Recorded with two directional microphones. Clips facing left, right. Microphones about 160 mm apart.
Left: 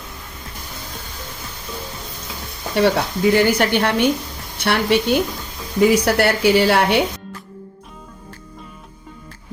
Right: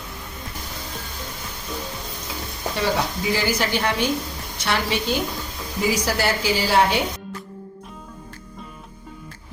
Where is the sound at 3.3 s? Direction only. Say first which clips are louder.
Left 8 dB; 60° left (ahead or behind).